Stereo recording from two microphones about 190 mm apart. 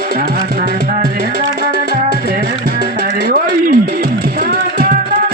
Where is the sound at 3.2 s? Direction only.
50° right (ahead or behind).